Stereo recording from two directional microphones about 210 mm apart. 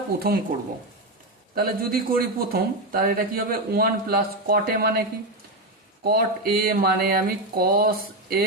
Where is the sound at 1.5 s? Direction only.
45° right (ahead or behind).